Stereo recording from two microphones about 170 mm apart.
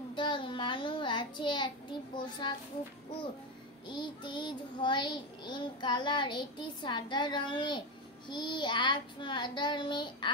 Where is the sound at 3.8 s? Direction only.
25° left (ahead or behind).